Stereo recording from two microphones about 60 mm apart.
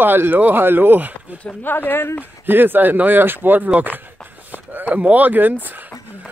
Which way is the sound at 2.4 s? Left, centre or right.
Right.